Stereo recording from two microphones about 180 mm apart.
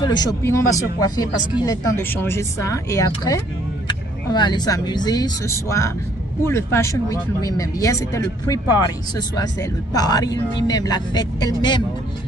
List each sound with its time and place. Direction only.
0.0 s speech: 20° left (ahead or behind)